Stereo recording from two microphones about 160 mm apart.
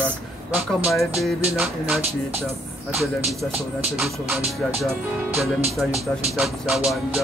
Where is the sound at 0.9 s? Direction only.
Centre (ahead or behind).